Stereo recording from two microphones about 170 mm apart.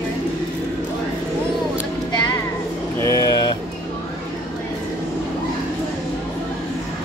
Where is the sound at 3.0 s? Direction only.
20° left (ahead or behind).